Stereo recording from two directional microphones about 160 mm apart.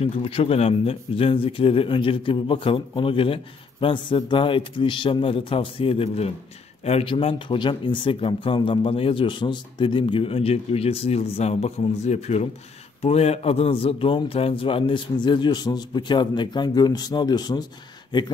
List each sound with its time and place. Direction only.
0.0 s a man's voice: 35° left (ahead or behind)